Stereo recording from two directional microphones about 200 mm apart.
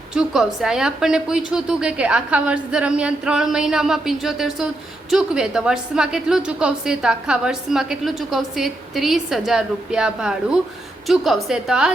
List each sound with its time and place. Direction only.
0.1 s a woman's voice: centre (ahead or behind)